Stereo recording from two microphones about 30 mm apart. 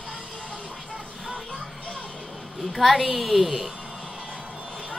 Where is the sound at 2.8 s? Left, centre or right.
Centre.